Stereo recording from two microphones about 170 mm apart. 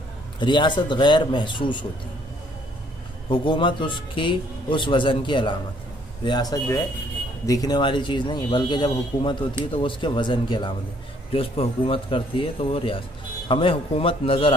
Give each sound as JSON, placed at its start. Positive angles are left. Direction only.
{"t": 0.4, "sound": "speech", "side_deg": 25}
{"t": 3.3, "sound": "a man's voice", "side_deg": 30}